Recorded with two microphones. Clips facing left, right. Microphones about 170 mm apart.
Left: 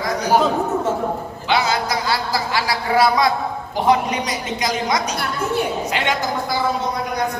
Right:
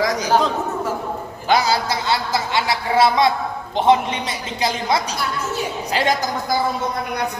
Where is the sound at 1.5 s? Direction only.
40° right (ahead or behind).